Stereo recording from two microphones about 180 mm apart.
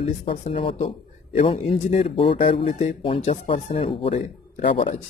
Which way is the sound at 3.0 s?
30° left (ahead or behind).